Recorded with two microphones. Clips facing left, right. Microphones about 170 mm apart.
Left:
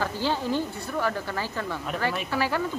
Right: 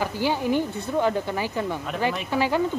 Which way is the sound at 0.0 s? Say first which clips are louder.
Right 3 dB; 15° right (ahead or behind).